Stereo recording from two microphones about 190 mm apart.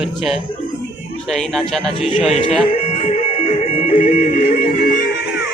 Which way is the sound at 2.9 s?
40° left (ahead or behind).